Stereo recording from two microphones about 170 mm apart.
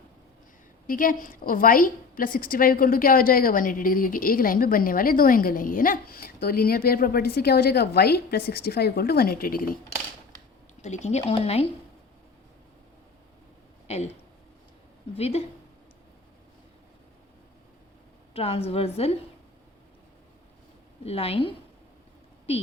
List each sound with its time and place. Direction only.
0.9 s a woman's voice: 55° left (ahead or behind)
10.8 s speech: 45° left (ahead or behind)
13.8 s speech: 40° left (ahead or behind)
15.1 s speech: 35° left (ahead or behind)
18.3 s speech: 35° left (ahead or behind)
21.0 s speech: 35° left (ahead or behind)